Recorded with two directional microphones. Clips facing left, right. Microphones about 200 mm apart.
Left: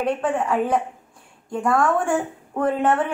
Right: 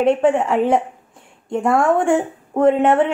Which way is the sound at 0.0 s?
25° right (ahead or behind).